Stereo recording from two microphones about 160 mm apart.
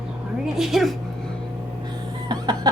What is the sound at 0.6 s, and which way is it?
Speech, centre (ahead or behind).